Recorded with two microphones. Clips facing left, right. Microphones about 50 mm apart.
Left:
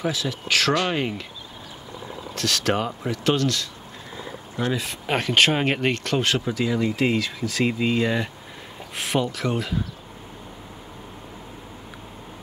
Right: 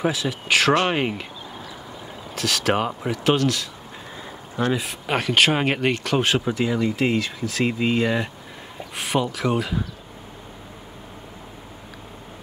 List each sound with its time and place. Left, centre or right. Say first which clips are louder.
0.0 s speech: right 3 dB; centre
2.3 s speech: right 2 dB; centre
5.0 s speech: even; centre
6.1 s speech: right 2 dB; centre